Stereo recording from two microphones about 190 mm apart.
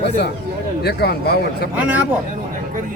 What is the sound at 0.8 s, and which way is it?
Speech, 55° left (ahead or behind).